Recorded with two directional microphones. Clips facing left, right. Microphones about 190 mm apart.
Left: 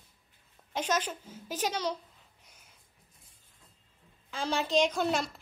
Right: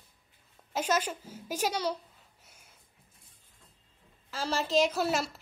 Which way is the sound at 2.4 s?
10° right (ahead or behind).